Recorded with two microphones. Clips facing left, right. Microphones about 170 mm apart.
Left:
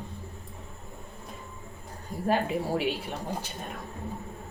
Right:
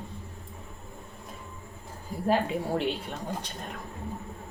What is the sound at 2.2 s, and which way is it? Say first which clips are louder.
Speech: even; centre (ahead or behind).